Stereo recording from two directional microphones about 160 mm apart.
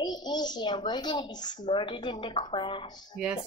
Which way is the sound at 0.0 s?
25° left (ahead or behind).